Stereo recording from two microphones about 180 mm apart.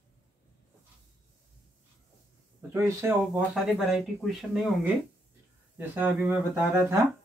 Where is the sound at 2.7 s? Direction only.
15° right (ahead or behind).